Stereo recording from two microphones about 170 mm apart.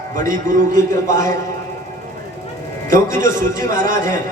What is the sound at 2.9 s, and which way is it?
A man's voice, 50° right (ahead or behind).